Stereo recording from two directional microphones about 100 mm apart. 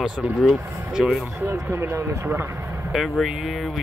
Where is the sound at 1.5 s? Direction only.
25° right (ahead or behind).